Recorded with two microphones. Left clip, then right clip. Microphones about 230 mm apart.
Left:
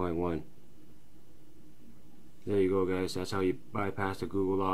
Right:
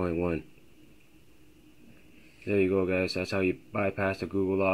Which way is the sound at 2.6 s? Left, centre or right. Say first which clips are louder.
Right 3 dB; centre.